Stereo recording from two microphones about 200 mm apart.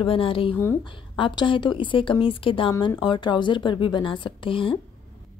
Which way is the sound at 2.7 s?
15° left (ahead or behind).